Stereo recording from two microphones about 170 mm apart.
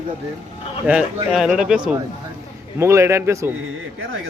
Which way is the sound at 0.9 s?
5° right (ahead or behind).